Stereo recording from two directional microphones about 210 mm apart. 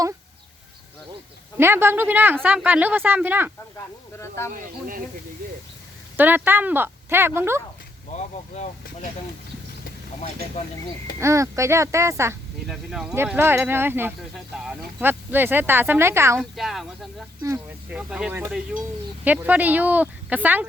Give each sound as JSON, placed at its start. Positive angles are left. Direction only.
{"t": 1.5, "sound": "speech", "side_deg": -10}
{"t": 4.2, "sound": "speech", "side_deg": 15}
{"t": 4.5, "sound": "speech", "side_deg": -40}
{"t": 6.1, "sound": "speech", "side_deg": -10}
{"t": 8.1, "sound": "speech", "side_deg": 35}
{"t": 10.2, "sound": "speech", "side_deg": 30}
{"t": 11.2, "sound": "speech", "side_deg": -15}
{"t": 12.6, "sound": "speech", "side_deg": 0}
{"t": 16.4, "sound": "speech", "side_deg": 0}